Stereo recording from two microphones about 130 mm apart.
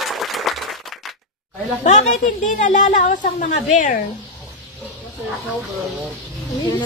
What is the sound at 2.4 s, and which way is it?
A woman's voice, 80° left.